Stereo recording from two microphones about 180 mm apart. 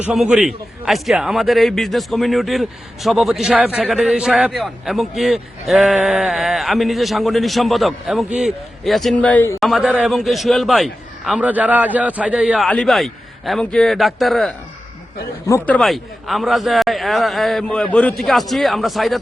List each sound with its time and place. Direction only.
0.0 s a man's voice: 5° right (ahead or behind)
9.6 s a man's voice: centre (ahead or behind)
15.4 s a man's voice: 10° left (ahead or behind)